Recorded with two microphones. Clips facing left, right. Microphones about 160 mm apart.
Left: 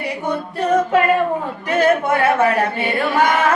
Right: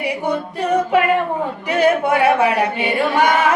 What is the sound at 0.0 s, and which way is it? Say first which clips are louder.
A capella: right 2 dB; 10° right (ahead or behind).